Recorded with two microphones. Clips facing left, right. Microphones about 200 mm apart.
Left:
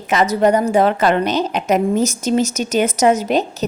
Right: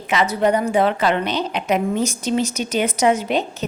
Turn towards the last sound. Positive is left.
turn(degrees=40)  # may be behind; listen again after turning